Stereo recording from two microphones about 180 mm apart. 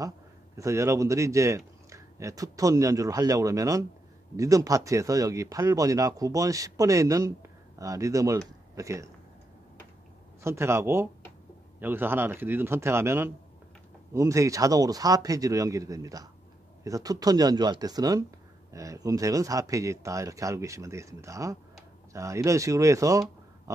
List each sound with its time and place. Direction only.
0.6 s speech: 15° right (ahead or behind)
10.4 s speech: 15° right (ahead or behind)